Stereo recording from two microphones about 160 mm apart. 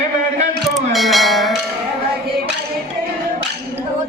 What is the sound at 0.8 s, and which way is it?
Bell, centre (ahead or behind).